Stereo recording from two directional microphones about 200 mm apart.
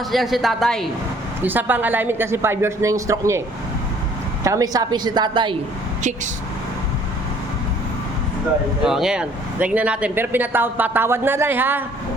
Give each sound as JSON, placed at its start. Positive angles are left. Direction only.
{"t": 0.1, "sound": "a woman's voice", "side_deg": 0}
{"t": 1.4, "sound": "speech", "side_deg": -10}
{"t": 4.4, "sound": "a woman's voice", "side_deg": -15}
{"t": 8.8, "sound": "speech", "side_deg": -5}